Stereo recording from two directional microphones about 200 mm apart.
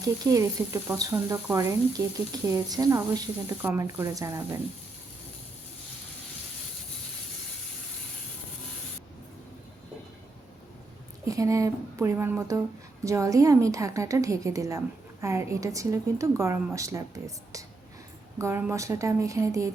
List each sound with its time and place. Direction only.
0.3 s a woman's voice: 15° right (ahead or behind)
11.3 s a woman's voice: 15° right (ahead or behind)